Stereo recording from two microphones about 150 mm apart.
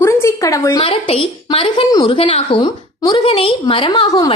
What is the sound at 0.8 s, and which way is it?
A woman's voice, 40° left (ahead or behind).